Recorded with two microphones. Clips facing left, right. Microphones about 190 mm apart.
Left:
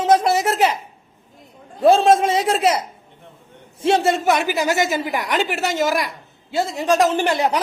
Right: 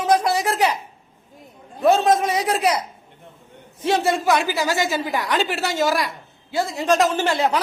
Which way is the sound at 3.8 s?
25° left (ahead or behind).